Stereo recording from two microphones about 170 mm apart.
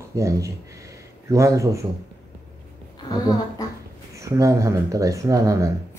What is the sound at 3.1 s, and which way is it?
Speech, 20° left (ahead or behind).